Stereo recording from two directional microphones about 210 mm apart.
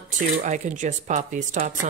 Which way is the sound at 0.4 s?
35° right (ahead or behind).